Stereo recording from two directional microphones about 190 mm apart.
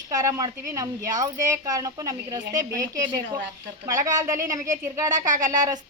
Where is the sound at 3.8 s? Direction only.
20° right (ahead or behind).